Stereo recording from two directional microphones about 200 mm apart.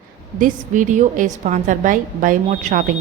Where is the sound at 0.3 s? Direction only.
40° right (ahead or behind).